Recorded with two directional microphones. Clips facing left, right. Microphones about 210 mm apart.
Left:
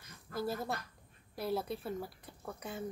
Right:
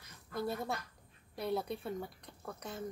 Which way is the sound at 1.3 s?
Centre (ahead or behind).